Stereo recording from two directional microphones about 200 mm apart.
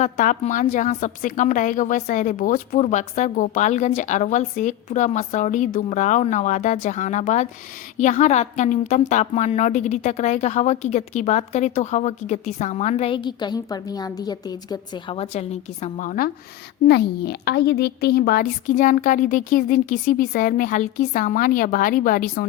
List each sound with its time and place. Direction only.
0.0 s a woman's voice: 40° left (ahead or behind)
16.8 s speech: 55° left (ahead or behind)